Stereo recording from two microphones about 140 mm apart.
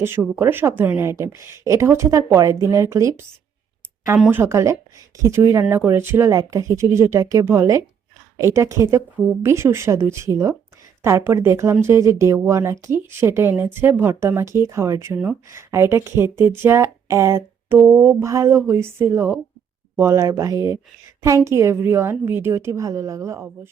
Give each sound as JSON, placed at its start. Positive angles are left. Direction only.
{"t": 0.3, "sound": "speech", "side_deg": -15}
{"t": 4.3, "sound": "speech", "side_deg": -15}